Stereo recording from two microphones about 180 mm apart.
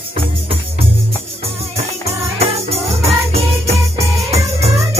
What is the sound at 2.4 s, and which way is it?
Music, 35° right (ahead or behind).